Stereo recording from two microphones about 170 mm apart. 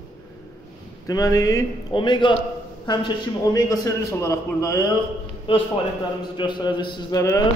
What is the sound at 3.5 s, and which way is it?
A man's voice, 20° left (ahead or behind).